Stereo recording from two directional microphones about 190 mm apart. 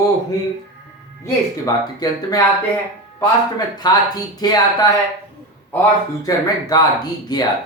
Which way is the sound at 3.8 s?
20° left (ahead or behind).